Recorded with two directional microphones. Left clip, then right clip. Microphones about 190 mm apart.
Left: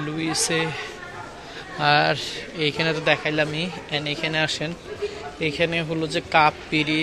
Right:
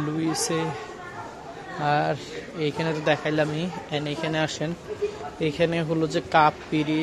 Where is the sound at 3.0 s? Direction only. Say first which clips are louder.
Even; 20° right (ahead or behind).